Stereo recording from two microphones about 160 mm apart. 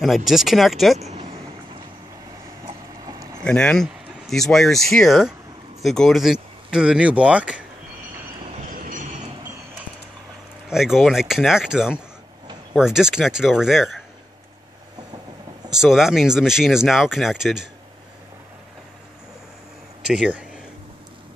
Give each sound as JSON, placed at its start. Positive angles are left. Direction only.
{"t": 0.0, "sound": "speech", "side_deg": 0}
{"t": 0.9, "sound": "speech", "side_deg": -45}
{"t": 2.6, "sound": "a sound", "side_deg": -20}
{"t": 3.4, "sound": "speech", "side_deg": 5}
{"t": 8.6, "sound": "a sound", "side_deg": -60}
{"t": 10.7, "sound": "speech", "side_deg": -5}
{"t": 15.7, "sound": "speech", "side_deg": -5}
{"t": 20.1, "sound": "speech", "side_deg": -5}